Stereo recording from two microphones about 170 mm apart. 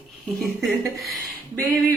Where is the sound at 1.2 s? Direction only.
15° right (ahead or behind).